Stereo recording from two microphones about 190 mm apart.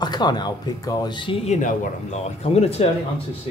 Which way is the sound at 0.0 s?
20° left (ahead or behind).